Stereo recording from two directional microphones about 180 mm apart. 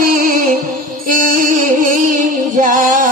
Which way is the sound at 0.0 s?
50° right (ahead or behind).